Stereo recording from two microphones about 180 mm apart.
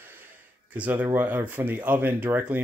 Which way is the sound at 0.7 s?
10° right (ahead or behind).